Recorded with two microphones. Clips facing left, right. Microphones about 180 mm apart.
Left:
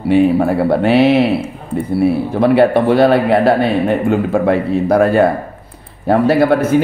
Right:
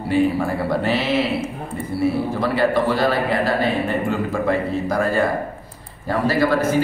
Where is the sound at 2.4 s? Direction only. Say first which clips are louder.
Left 9 dB; 60° left (ahead or behind).